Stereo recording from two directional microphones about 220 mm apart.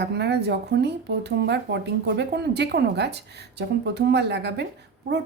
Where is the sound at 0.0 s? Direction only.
50° right (ahead or behind).